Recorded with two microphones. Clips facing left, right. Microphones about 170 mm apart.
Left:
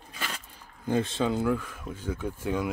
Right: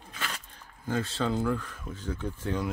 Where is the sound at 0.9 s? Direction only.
20° left (ahead or behind).